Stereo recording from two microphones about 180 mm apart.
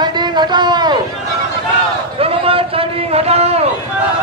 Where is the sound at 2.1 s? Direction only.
30° right (ahead or behind).